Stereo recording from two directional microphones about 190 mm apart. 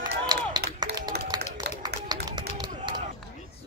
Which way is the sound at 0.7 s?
20° right (ahead or behind).